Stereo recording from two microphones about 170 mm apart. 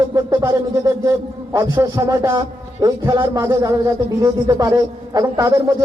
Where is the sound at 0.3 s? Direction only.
15° right (ahead or behind).